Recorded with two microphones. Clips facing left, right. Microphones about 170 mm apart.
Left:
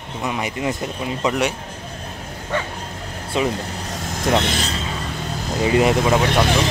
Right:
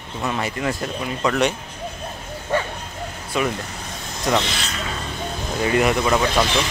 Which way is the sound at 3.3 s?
25° left (ahead or behind).